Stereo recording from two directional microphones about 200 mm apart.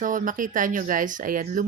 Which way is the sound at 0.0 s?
40° right (ahead or behind).